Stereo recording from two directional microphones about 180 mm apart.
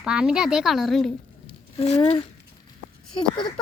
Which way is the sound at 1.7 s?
35° left (ahead or behind).